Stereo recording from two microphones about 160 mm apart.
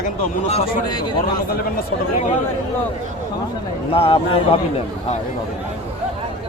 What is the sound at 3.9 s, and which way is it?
Speech, 35° left (ahead or behind).